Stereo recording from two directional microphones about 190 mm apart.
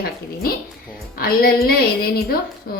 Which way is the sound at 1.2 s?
50° left (ahead or behind).